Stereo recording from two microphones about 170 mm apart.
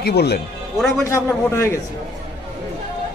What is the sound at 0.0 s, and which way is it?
Speech, 70° left (ahead or behind).